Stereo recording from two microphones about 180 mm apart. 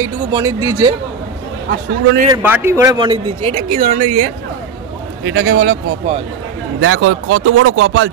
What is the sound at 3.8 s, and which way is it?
Speech, 45° right (ahead or behind).